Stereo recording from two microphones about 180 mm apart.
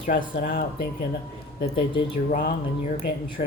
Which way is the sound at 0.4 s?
55° left (ahead or behind).